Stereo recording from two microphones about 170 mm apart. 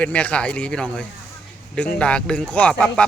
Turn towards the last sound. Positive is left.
turn(degrees=5)  # may be behind; listen again after turning